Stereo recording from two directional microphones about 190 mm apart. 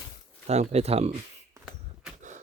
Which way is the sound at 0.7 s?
35° right (ahead or behind).